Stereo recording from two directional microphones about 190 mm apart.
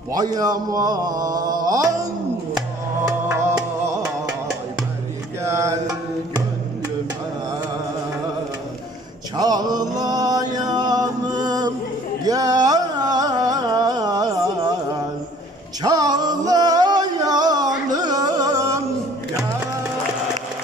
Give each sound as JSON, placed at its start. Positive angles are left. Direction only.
{"t": 0.1, "sound": "speech", "side_deg": -20}
{"t": 3.1, "sound": "music", "side_deg": -10}
{"t": 9.4, "sound": "mantra", "side_deg": -20}
{"t": 12.3, "sound": "music", "side_deg": -20}